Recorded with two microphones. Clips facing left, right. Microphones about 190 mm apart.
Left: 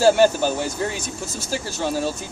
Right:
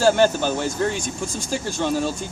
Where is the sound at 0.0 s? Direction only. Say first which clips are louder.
Left 2 dB; 10° left (ahead or behind).